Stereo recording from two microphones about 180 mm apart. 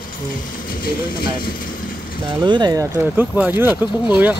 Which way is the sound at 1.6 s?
50° left (ahead or behind).